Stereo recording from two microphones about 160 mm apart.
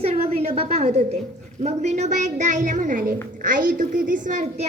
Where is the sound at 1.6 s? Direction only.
45° right (ahead or behind).